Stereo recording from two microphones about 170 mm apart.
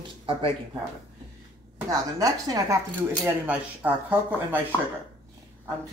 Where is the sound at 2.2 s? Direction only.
20° right (ahead or behind).